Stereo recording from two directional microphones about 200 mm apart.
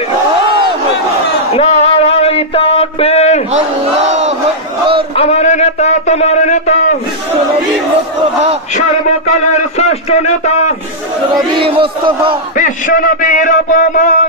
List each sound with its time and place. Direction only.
1.5 s a sound: 30° left (ahead or behind)
4.1 s battle cry: 35° right (ahead or behind)
5.1 s speech: 30° left (ahead or behind)
8.7 s speech: 35° left (ahead or behind)
11.3 s speech: 25° right (ahead or behind)
12.5 s speech: 40° left (ahead or behind)